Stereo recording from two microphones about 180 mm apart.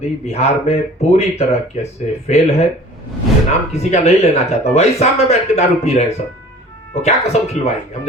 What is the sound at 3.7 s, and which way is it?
Speech, 35° left (ahead or behind).